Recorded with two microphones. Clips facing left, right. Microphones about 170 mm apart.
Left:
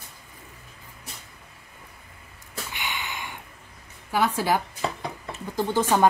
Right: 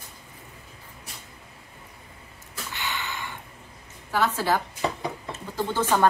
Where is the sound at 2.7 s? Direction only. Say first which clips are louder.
Right 2 dB; 15° left (ahead or behind).